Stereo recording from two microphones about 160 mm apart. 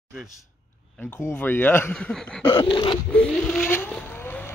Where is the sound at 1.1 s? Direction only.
15° left (ahead or behind).